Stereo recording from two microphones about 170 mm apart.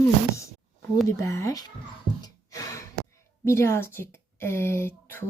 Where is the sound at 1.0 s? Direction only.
15° left (ahead or behind).